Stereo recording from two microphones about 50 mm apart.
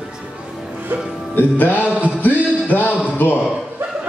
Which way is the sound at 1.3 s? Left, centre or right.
Left.